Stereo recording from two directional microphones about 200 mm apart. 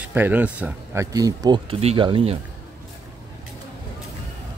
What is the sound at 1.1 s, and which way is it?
Speech, 20° right (ahead or behind).